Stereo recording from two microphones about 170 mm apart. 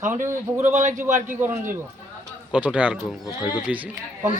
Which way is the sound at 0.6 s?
45° right (ahead or behind).